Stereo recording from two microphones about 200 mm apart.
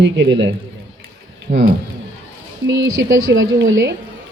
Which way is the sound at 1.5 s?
35° right (ahead or behind).